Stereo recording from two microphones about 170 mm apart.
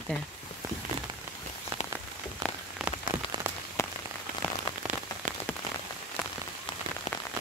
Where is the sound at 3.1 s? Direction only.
15° right (ahead or behind).